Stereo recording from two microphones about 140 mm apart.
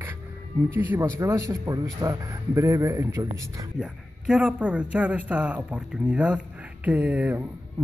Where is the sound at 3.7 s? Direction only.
5° right (ahead or behind).